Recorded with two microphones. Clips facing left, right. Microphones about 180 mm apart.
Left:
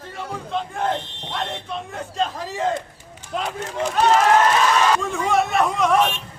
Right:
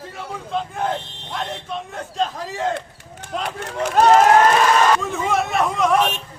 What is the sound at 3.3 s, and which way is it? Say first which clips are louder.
Speech: even; centre (ahead or behind).